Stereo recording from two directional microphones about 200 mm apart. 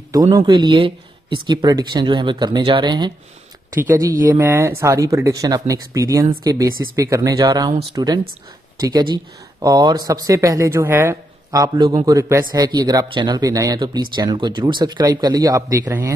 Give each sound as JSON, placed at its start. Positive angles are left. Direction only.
{"t": 0.1, "sound": "speech", "side_deg": -20}